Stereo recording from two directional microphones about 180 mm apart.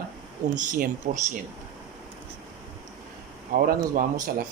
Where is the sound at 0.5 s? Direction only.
45° right (ahead or behind).